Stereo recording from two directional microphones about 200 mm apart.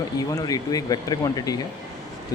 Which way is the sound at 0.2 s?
20° left (ahead or behind).